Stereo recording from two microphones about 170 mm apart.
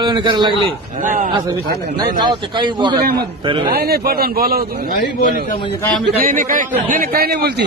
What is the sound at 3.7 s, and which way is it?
Speech, 65° right (ahead or behind).